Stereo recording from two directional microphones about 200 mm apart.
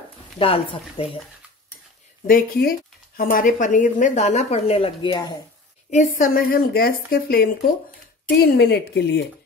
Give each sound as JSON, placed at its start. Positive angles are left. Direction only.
{"t": 0.4, "sound": "speech", "side_deg": 30}
{"t": 2.2, "sound": "a woman's voice", "side_deg": 45}
{"t": 5.9, "sound": "a woman's voice", "side_deg": 40}